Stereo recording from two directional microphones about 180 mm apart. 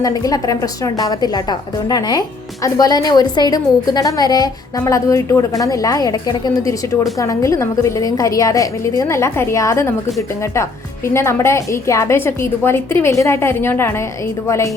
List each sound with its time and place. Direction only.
0.0 s a woman's voice: 20° left (ahead or behind)